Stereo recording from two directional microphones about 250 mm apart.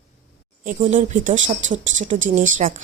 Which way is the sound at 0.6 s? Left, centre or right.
Right.